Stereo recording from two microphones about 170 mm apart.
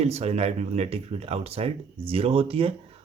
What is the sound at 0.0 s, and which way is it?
Speech, 40° right (ahead or behind).